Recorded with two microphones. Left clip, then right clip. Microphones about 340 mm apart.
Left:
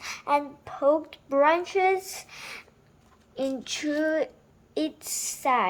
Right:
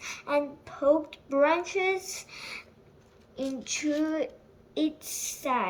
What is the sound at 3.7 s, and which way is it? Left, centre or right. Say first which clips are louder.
Speech: left 1 dB; centre.